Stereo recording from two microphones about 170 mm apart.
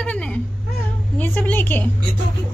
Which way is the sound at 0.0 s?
5° left (ahead or behind).